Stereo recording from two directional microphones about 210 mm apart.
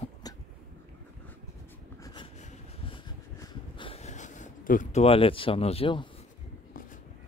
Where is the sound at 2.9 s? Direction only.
20° left (ahead or behind).